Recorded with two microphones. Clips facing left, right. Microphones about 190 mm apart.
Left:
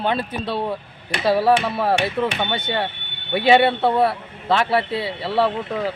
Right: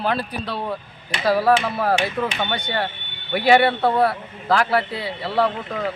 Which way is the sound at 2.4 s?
25° left (ahead or behind).